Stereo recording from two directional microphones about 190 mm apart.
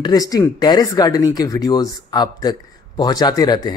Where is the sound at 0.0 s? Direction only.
20° left (ahead or behind).